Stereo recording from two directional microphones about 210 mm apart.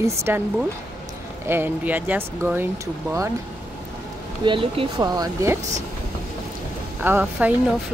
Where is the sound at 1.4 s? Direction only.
10° right (ahead or behind).